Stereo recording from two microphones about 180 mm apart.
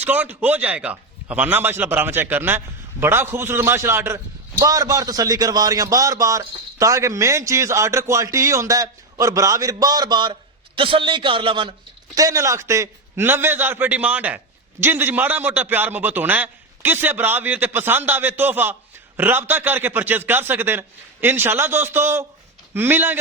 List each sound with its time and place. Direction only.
0.0 s a man's voice: 10° right (ahead or behind); by 11.7 s 30° right (ahead or behind)
12.1 s a man's voice: 20° right (ahead or behind)